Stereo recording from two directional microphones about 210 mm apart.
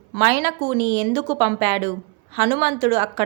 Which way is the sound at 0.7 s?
55° right (ahead or behind).